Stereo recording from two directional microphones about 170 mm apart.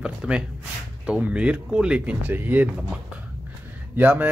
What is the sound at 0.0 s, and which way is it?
A man's voice, 5° right (ahead or behind).